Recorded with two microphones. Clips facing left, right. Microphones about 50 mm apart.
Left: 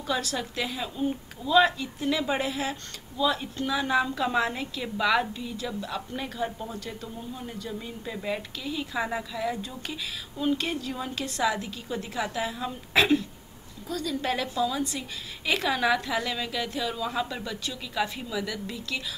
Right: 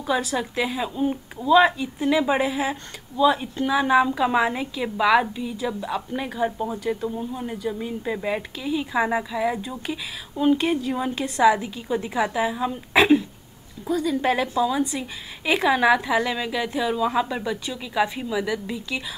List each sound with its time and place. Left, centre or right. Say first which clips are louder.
0.0 s a woman's voice: right 5 dB; centre